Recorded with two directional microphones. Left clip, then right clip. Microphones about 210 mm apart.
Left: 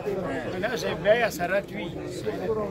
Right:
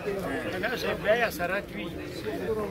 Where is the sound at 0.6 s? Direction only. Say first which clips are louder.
Left 3 dB; 45° left (ahead or behind).